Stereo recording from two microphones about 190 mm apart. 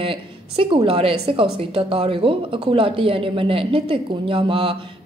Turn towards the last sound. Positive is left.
turn(degrees=-30)  # may be behind; listen again after turning